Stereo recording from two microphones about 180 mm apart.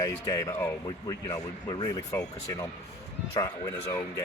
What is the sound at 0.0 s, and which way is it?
Speech, 20° left (ahead or behind).